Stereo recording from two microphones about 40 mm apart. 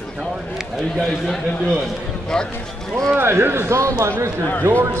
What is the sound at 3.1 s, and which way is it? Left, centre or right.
Speech, right.